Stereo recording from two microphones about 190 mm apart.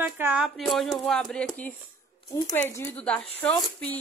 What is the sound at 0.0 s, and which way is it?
Speech, 10° right (ahead or behind).